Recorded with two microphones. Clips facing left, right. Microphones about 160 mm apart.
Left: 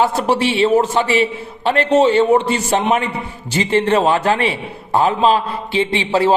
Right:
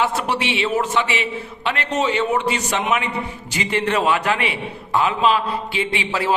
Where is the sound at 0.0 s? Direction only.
30° left (ahead or behind).